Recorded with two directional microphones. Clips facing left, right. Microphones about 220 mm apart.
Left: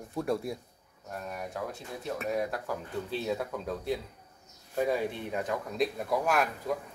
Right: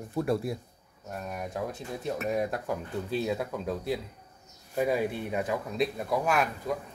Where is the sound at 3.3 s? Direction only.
5° right (ahead or behind).